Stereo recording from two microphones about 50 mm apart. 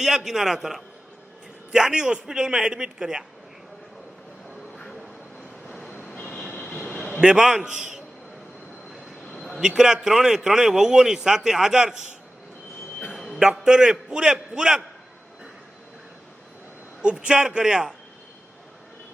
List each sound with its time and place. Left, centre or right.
0.0 s a man's voice: centre
6.1 s train: left
7.2 s a man's voice: centre
9.6 s a man's voice: centre
13.1 s a sound: centre
13.4 s a man's voice: centre
17.0 s a man's voice: centre